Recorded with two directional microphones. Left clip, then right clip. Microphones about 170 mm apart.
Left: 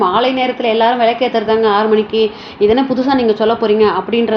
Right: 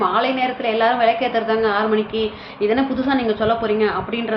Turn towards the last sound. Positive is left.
turn(degrees=35)  # may be behind; listen again after turning